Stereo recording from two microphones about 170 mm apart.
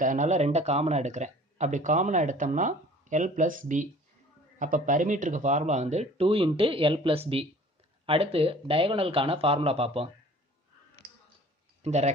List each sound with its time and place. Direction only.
0.0 s speech: 45° right (ahead or behind)
11.8 s speech: 40° right (ahead or behind)